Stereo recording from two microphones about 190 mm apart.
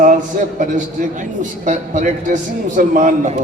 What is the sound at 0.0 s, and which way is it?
A man's voice, 45° right (ahead or behind).